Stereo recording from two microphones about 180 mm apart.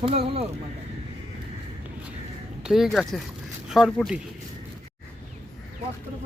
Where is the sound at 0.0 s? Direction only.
35° right (ahead or behind).